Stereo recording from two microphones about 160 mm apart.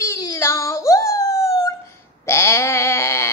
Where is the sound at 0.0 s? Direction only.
15° left (ahead or behind).